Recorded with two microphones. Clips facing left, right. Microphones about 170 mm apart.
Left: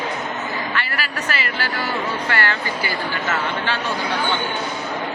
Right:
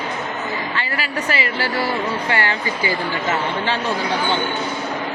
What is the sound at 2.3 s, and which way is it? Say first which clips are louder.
Speech: right 1 dB; 20° right (ahead or behind).